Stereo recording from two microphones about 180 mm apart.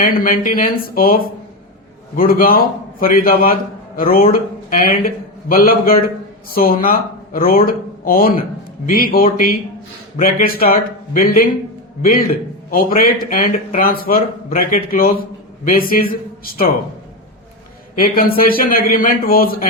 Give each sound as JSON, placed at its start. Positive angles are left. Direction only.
{"t": 0.0, "sound": "a man's voice", "side_deg": 50}
{"t": 17.9, "sound": "a man's voice", "side_deg": 55}